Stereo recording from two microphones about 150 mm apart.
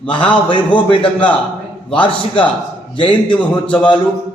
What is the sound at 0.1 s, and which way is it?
A man's voice, 35° left (ahead or behind).